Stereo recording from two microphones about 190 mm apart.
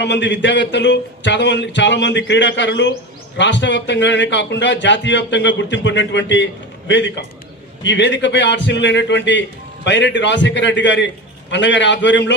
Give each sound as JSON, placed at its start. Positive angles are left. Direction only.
{"t": 0.0, "sound": "a man's voice", "side_deg": 65}